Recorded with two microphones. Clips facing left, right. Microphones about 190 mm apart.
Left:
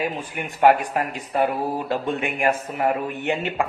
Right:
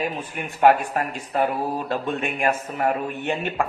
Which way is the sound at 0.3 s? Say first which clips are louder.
Even; 10° left (ahead or behind).